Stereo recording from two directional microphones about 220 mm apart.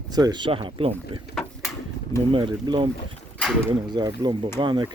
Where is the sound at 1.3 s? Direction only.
10° left (ahead or behind).